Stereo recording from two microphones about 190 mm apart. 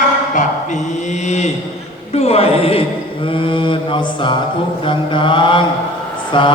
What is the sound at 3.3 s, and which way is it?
Mantra, 25° left (ahead or behind).